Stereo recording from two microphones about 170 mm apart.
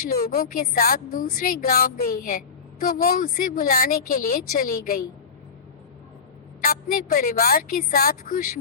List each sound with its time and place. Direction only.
0.0 s speech: 55° left (ahead or behind)
6.6 s speech: 60° left (ahead or behind)